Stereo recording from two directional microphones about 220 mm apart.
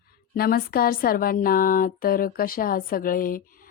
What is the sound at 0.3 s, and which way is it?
A woman's voice, 45° left (ahead or behind).